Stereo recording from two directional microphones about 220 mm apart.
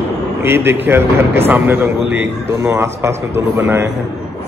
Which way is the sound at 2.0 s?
50° right (ahead or behind).